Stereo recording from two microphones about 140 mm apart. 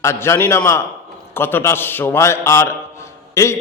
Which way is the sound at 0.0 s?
20° left (ahead or behind).